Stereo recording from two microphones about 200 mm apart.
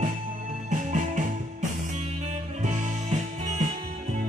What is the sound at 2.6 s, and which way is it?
Music, 35° right (ahead or behind).